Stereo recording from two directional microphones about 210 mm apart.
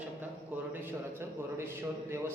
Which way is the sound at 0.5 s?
5° right (ahead or behind).